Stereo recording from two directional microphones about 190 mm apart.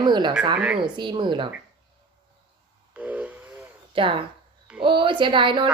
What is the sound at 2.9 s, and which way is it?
Steam whistle, 5° right (ahead or behind).